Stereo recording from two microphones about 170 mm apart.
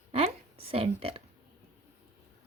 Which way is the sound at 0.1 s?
35° right (ahead or behind).